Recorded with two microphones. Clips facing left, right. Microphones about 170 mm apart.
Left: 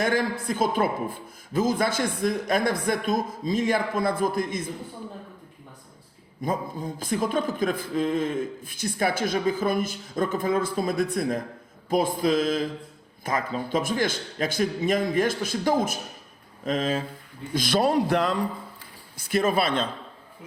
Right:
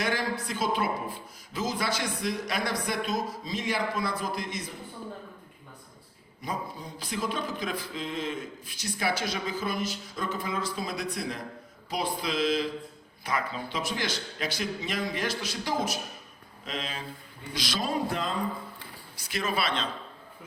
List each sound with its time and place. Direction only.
0.0 s a man's voice: 50° left (ahead or behind)
6.4 s a man's voice: 50° left (ahead or behind); by 18.3 s 70° left (ahead or behind)
19.1 s a man's voice: 50° left (ahead or behind)